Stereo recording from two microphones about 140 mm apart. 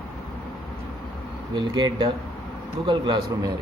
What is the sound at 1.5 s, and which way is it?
A man's voice, 30° right (ahead or behind).